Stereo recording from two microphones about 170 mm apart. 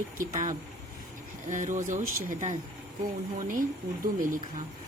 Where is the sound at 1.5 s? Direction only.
45° right (ahead or behind).